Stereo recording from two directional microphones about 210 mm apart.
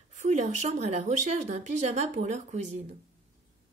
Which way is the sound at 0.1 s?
35° right (ahead or behind).